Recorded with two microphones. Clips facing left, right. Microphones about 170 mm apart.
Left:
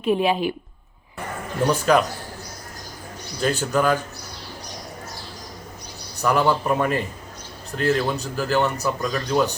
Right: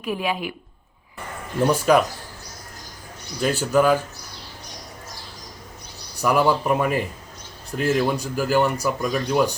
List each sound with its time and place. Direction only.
0.0 s speech: 25° left (ahead or behind)
1.6 s speech: 5° right (ahead or behind)
3.4 s speech: 10° right (ahead or behind)
6.2 s speech: 10° right (ahead or behind)